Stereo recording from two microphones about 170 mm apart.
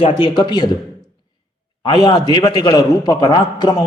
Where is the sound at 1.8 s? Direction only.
25° left (ahead or behind).